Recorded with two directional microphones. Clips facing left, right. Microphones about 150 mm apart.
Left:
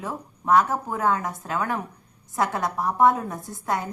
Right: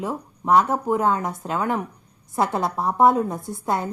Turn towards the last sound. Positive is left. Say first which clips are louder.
# right 3 dB
turn(degrees=-25)  # may be behind; listen again after turning